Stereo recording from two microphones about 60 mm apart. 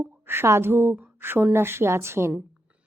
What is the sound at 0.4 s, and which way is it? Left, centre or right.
A woman's voice, right.